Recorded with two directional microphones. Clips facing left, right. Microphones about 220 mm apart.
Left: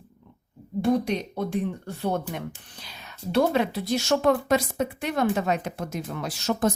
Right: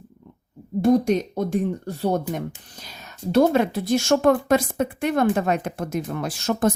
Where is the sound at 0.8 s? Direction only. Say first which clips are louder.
Right 5 dB; 45° right (ahead or behind).